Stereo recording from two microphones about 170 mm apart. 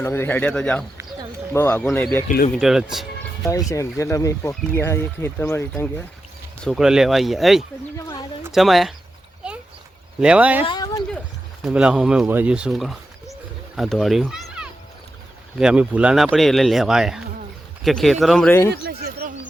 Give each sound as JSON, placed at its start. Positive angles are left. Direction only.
{"t": 0.0, "sound": "speech", "side_deg": 15}
{"t": 2.6, "sound": "speech", "side_deg": -5}
{"t": 3.7, "sound": "speech", "side_deg": 20}
{"t": 6.7, "sound": "speech", "side_deg": -5}
{"t": 7.9, "sound": "a sound", "side_deg": 20}
{"t": 8.5, "sound": "speech", "side_deg": 0}
{"t": 9.4, "sound": "a sound", "side_deg": -5}
{"t": 10.2, "sound": "speech", "side_deg": -5}
{"t": 10.7, "sound": "speech", "side_deg": 20}
{"t": 11.6, "sound": "speech", "side_deg": -5}
{"t": 18.7, "sound": "a sound", "side_deg": -70}